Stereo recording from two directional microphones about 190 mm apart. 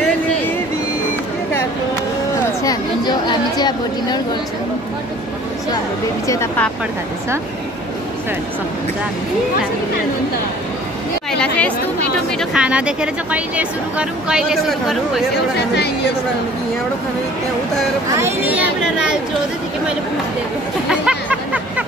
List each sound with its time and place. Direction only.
2.6 s speech: 20° left (ahead or behind)
6.2 s speech: 15° left (ahead or behind)
11.3 s speech: 5° left (ahead or behind)
12.4 s speech: 5° right (ahead or behind)
15.5 s speech: 60° left (ahead or behind)
18.1 s speech: 10° right (ahead or behind)
20.9 s hubbub: 5° right (ahead or behind)